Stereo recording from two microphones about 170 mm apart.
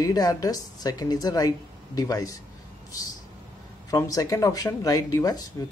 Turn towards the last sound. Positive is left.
turn(degrees=20)  # may be behind; listen again after turning